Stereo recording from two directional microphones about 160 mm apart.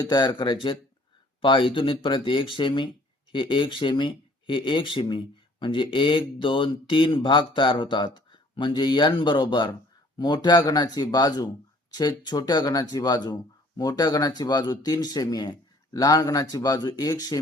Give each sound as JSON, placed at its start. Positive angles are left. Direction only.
{"t": 0.1, "sound": "speech", "side_deg": 25}